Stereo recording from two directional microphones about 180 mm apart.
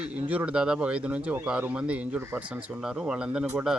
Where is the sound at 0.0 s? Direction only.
5° right (ahead or behind).